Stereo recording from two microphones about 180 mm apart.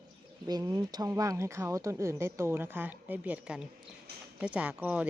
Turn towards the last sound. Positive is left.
turn(degrees=-10)  # may be behind; listen again after turning